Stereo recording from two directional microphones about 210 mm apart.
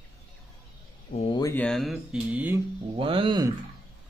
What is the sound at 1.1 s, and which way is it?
Speech, 30° left (ahead or behind).